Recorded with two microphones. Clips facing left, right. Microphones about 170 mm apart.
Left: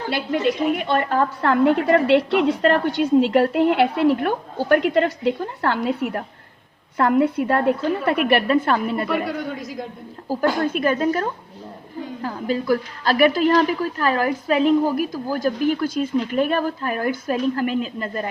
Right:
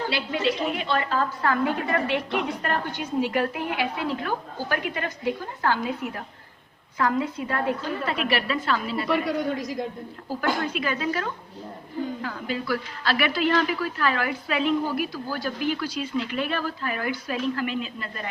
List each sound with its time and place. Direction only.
0.1 s a woman's voice: 50° left (ahead or behind)
9.0 s a man's voice: centre (ahead or behind)
10.2 s a woman's voice: 45° left (ahead or behind)